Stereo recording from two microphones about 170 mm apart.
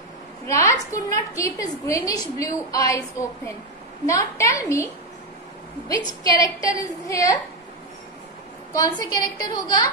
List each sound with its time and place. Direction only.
0.5 s a woman's voice: 20° left (ahead or behind)
5.9 s a woman's voice: 20° left (ahead or behind)
8.7 s a woman's voice: 20° left (ahead or behind)